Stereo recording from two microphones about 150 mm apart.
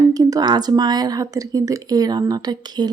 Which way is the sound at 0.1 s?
25° right (ahead or behind).